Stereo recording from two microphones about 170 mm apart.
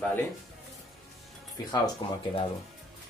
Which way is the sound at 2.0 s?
25° left (ahead or behind).